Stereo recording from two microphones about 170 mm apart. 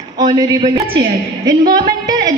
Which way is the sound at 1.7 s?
25° right (ahead or behind).